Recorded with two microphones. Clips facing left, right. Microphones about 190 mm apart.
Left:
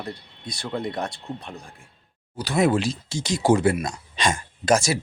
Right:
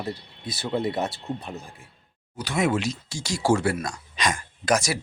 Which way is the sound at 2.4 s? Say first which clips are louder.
Left 3 dB; 35° left (ahead or behind).